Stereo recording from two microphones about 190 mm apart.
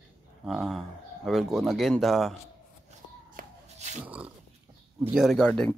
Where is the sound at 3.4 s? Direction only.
50° right (ahead or behind).